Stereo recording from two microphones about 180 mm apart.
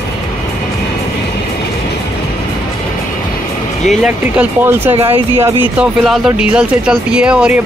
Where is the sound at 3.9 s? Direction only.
5° right (ahead or behind).